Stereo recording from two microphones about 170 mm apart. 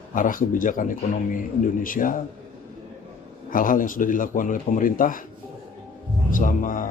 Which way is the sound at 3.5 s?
55° left (ahead or behind).